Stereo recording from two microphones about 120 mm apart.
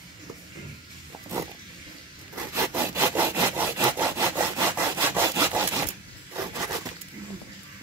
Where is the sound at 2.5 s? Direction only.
20° right (ahead or behind).